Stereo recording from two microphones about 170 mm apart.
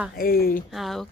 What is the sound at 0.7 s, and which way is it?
Speech, centre (ahead or behind).